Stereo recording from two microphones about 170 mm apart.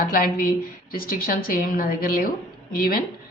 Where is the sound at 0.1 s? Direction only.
60° left (ahead or behind).